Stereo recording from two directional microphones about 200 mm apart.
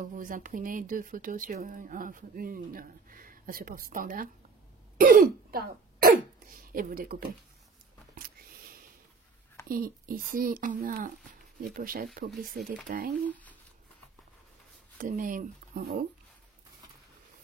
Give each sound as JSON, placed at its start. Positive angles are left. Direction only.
{"t": 0.0, "sound": "speech", "side_deg": -40}
{"t": 8.1, "sound": "a sound", "side_deg": -45}
{"t": 9.7, "sound": "speech", "side_deg": -45}
{"t": 13.3, "sound": "shuffling cards", "side_deg": 10}
{"t": 15.0, "sound": "speech", "side_deg": -40}